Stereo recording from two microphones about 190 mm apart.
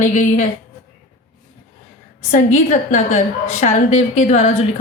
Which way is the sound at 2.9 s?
40° left (ahead or behind).